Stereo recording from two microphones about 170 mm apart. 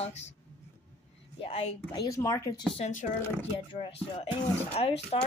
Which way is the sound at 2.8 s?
45° left (ahead or behind).